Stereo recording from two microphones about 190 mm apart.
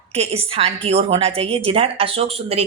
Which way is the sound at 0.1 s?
30° right (ahead or behind).